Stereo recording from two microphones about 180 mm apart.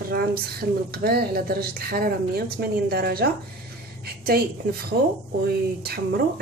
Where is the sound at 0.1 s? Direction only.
60° right (ahead or behind).